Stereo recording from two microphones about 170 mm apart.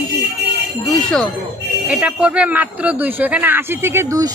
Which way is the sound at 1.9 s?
5° right (ahead or behind).